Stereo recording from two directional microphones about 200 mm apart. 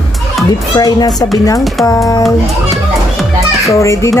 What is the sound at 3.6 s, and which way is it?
Speech, 15° left (ahead or behind).